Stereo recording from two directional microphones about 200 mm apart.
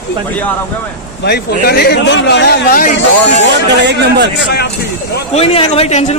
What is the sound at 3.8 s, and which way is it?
Speech, 55° right (ahead or behind).